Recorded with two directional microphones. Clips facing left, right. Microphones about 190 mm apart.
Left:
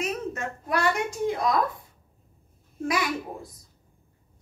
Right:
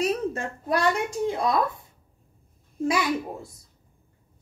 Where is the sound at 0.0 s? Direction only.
30° right (ahead or behind).